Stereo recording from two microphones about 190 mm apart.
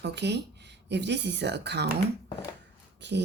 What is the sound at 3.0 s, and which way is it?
Speech, 65° right (ahead or behind).